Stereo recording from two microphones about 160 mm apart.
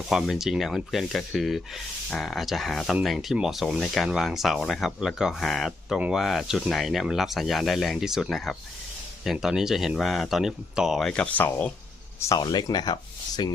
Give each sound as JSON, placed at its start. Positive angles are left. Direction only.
{"t": 0.1, "sound": "speech", "side_deg": 0}
{"t": 12.2, "sound": "speech", "side_deg": 25}